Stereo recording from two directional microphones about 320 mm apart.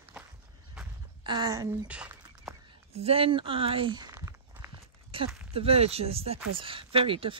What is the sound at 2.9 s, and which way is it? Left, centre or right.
A woman's voice, centre.